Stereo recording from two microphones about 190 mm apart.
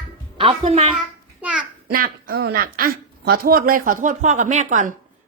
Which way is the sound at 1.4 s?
5° right (ahead or behind).